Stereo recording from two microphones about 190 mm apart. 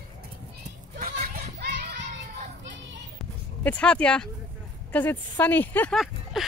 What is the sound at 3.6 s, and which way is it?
A woman's voice, 5° left (ahead or behind).